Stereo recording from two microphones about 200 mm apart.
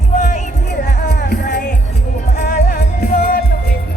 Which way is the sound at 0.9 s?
45° left (ahead or behind).